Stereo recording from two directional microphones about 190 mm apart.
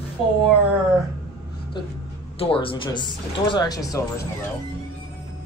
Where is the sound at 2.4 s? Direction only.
30° left (ahead or behind).